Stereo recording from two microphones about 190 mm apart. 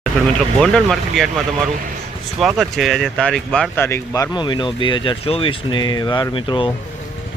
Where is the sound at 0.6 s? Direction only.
5° left (ahead or behind); by 6.7 s 25° left (ahead or behind).